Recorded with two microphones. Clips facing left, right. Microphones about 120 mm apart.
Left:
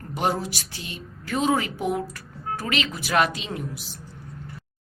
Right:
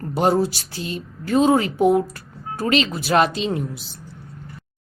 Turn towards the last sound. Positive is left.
turn(degrees=-30)  # may be behind; listen again after turning